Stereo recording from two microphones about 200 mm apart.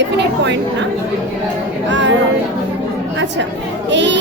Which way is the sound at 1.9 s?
65° right (ahead or behind).